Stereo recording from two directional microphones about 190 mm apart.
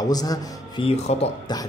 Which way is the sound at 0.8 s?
35° left (ahead or behind).